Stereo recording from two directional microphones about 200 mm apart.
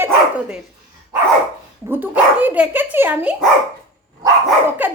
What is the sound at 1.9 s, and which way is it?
Speech, 10° right (ahead or behind).